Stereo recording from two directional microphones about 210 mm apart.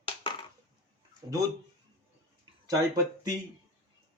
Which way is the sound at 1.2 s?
15° right (ahead or behind).